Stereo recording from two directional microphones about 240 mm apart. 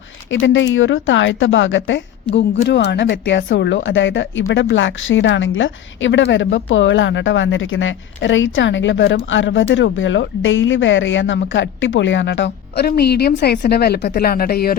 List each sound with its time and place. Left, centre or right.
0.3 s speech: left